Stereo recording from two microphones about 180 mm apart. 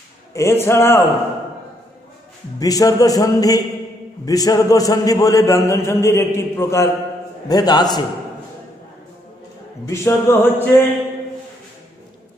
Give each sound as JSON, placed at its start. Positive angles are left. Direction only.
{"t": 0.3, "sound": "a man's voice", "side_deg": 15}
{"t": 2.6, "sound": "a man's voice", "side_deg": 20}
{"t": 9.8, "sound": "a man's voice", "side_deg": 15}